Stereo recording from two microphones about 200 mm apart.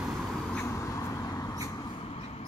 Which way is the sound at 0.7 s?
15° left (ahead or behind).